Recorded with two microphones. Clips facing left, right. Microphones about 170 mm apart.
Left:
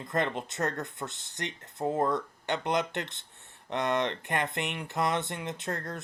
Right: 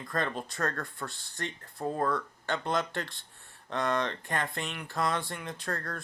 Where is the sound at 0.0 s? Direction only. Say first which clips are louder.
Left 2 dB; 20° left (ahead or behind).